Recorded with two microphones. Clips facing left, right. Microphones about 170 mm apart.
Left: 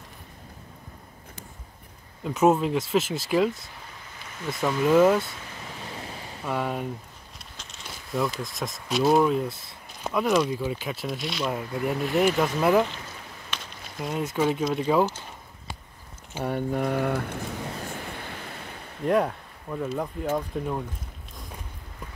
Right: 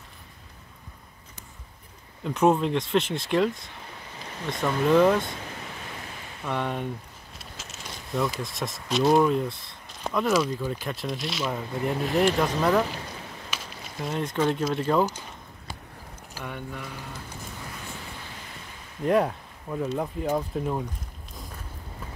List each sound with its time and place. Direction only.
2.2 s speech: 5° left (ahead or behind)
6.4 s speech: 5° left (ahead or behind)
16.4 s speech: 40° left (ahead or behind)
16.8 s speech: 60° left (ahead or behind)
19.0 s speech: centre (ahead or behind)